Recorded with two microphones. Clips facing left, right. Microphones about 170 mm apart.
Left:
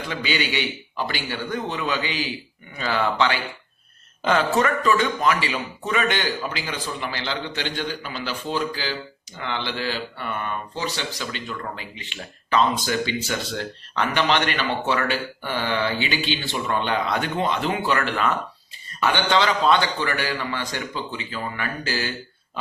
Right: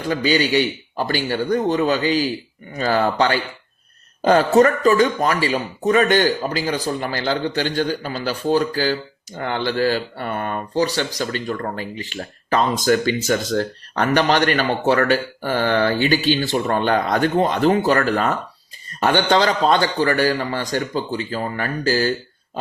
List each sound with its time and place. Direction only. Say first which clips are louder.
0.0 s a man's voice: right 8 dB; 40° right (ahead or behind)